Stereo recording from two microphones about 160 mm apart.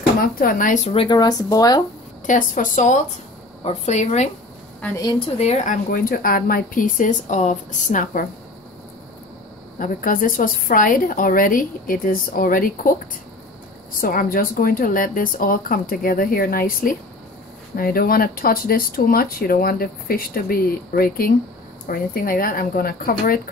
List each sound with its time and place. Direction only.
0.2 s a woman's voice: 65° left (ahead or behind); by 1.0 s 45° left (ahead or behind)
1.0 s speech: 25° left (ahead or behind)
2.2 s a woman's voice: 55° left (ahead or behind)
9.8 s a woman's voice: 60° left (ahead or behind)
14.0 s a woman's voice: 65° left (ahead or behind)